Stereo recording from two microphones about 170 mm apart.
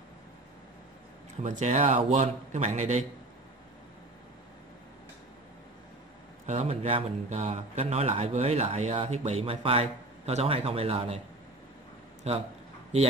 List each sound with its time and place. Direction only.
1.4 s a man's voice: 45° right (ahead or behind)
6.4 s a man's voice: 40° right (ahead or behind)
12.2 s a man's voice: 40° right (ahead or behind)